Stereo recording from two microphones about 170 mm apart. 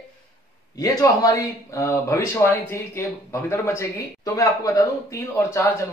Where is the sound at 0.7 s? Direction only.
20° left (ahead or behind).